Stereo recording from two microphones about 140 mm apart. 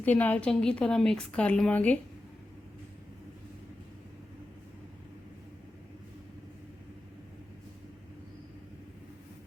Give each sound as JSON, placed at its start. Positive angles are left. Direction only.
{"t": 0.0, "sound": "a woman's voice", "side_deg": 10}